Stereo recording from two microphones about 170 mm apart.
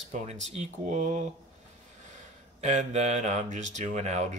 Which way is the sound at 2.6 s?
45° right (ahead or behind).